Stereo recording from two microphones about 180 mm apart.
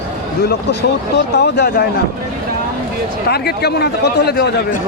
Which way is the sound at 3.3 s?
65° left (ahead or behind).